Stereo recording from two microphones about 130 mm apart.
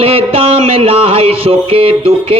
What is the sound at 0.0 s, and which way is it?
Music, 45° right (ahead or behind).